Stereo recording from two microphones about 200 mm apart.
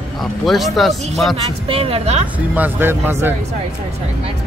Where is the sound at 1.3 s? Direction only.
30° right (ahead or behind).